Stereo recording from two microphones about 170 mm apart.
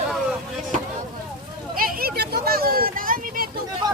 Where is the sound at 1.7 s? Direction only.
55° right (ahead or behind).